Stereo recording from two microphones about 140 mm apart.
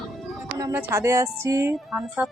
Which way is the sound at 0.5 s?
20° right (ahead or behind).